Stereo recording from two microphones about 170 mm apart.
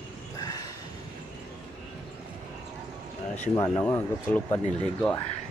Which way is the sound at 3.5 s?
20° left (ahead or behind).